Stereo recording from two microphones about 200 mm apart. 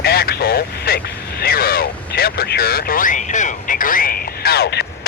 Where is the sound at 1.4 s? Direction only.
50° left (ahead or behind).